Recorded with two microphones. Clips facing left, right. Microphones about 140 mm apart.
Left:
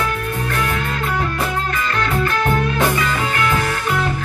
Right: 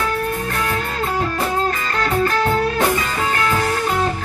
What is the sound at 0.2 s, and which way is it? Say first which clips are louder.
Music: even; 35° right (ahead or behind).